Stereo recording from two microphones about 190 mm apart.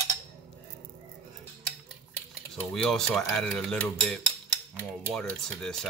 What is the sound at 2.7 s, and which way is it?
Cutlery, 5° left (ahead or behind).